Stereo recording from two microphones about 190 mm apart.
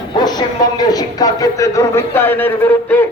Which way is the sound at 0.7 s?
20° left (ahead or behind).